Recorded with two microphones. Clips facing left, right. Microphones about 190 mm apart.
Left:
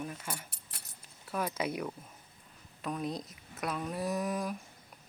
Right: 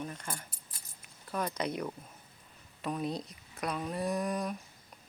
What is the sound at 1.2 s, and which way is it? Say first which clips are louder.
Speech: even; 5° left (ahead or behind).